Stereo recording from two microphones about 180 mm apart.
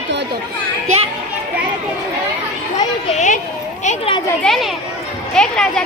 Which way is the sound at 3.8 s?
40° left (ahead or behind).